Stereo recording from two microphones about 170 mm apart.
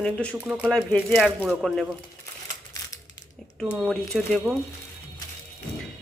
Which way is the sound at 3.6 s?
5° right (ahead or behind).